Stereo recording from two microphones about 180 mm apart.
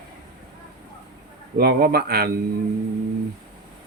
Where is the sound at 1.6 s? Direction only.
60° right (ahead or behind).